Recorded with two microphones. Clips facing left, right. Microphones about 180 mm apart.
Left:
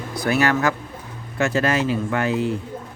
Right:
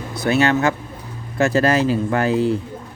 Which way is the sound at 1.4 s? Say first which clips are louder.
Right 4 dB; 35° right (ahead or behind).